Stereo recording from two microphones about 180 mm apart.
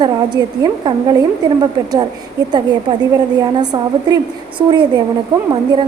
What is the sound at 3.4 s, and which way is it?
A woman's voice, 20° right (ahead or behind).